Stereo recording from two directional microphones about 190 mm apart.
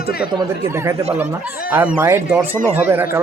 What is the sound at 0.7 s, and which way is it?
A man's voice, 15° right (ahead or behind).